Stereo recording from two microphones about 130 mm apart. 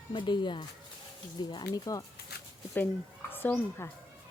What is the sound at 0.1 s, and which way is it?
Speech, 35° left (ahead or behind).